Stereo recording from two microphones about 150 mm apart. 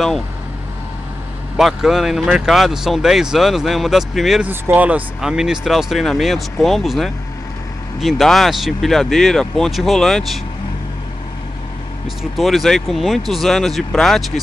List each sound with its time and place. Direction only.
1.6 s speech: centre (ahead or behind)
4.5 s speech: 10° right (ahead or behind)
12.2 s speech: centre (ahead or behind)